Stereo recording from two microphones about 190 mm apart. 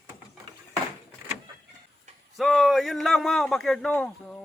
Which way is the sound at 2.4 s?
Centre (ahead or behind).